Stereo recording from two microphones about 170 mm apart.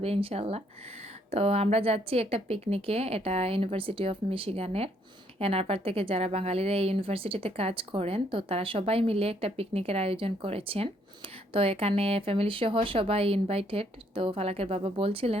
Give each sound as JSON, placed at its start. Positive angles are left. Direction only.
{"t": 0.0, "sound": "a woman's voice", "side_deg": -35}